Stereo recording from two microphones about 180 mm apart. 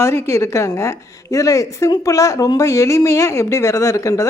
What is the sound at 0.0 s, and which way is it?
A woman's voice, 15° left (ahead or behind).